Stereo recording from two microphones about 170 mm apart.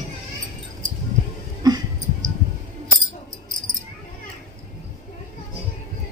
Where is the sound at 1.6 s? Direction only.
20° right (ahead or behind).